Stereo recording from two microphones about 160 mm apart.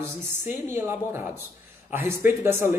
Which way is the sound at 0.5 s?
15° right (ahead or behind).